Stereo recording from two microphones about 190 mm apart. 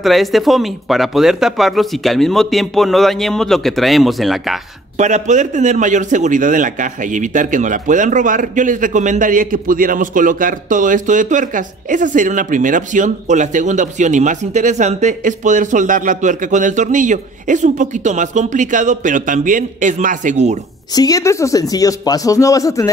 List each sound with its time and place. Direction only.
0.0 s speech: centre (ahead or behind)
4.9 s a man's voice: 40° right (ahead or behind)
20.9 s a man's voice: 20° left (ahead or behind)